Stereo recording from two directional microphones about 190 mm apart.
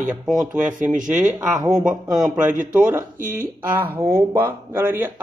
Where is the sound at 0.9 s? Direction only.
40° right (ahead or behind).